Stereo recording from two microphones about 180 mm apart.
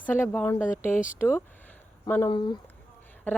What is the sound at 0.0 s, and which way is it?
Speech, 10° left (ahead or behind).